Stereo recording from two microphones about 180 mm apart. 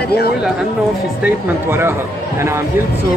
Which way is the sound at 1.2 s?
15° right (ahead or behind).